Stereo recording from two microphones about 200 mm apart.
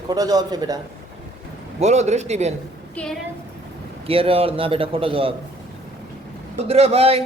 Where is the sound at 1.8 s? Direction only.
35° right (ahead or behind).